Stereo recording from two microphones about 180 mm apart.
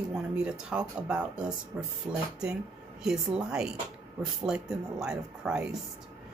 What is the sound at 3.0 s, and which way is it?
Speech, 5° right (ahead or behind).